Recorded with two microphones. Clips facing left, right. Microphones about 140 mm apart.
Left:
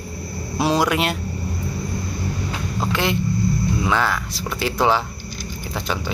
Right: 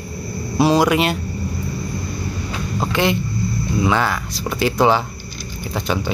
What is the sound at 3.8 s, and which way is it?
Speech, centre (ahead or behind).